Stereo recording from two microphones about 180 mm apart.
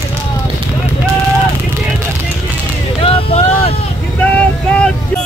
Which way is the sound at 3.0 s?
35° left (ahead or behind).